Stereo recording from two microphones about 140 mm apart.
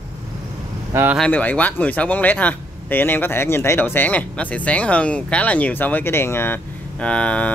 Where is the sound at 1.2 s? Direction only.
10° left (ahead or behind).